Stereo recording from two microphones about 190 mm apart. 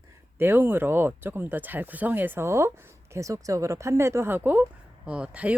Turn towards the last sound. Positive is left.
turn(degrees=-5)  # may be behind; listen again after turning